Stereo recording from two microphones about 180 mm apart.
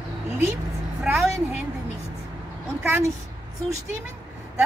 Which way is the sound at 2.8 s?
10° right (ahead or behind).